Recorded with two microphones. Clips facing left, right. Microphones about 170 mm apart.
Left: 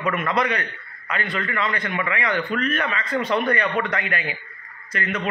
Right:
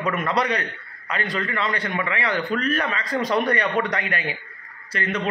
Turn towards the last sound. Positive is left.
turn(degrees=-35)  # may be behind; listen again after turning